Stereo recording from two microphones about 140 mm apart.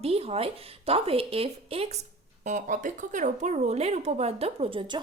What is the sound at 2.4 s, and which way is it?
A woman's voice, 65° right (ahead or behind).